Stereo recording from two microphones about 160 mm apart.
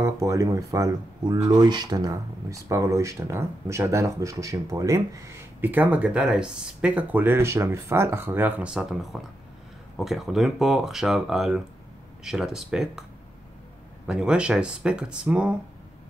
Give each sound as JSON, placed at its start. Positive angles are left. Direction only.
{"t": 0.0, "sound": "speech", "side_deg": -20}
{"t": 14.0, "sound": "speech", "side_deg": -5}